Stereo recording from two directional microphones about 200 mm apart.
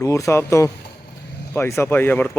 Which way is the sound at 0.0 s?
15° left (ahead or behind).